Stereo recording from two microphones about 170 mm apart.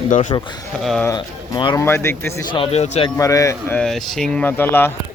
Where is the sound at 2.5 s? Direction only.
35° left (ahead or behind).